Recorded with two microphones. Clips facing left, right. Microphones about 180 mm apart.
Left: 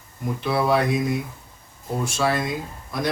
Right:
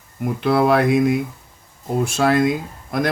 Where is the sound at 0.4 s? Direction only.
55° right (ahead or behind).